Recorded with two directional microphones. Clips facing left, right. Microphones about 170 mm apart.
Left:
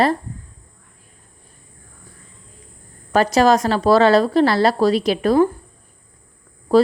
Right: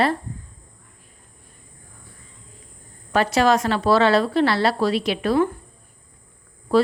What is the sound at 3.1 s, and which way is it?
A woman's voice, 40° left (ahead or behind).